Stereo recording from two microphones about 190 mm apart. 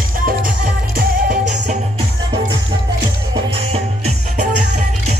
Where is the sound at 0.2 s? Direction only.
45° right (ahead or behind).